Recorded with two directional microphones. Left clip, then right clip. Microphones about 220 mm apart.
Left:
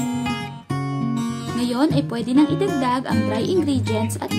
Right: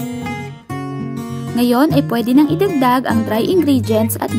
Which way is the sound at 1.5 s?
30° right (ahead or behind).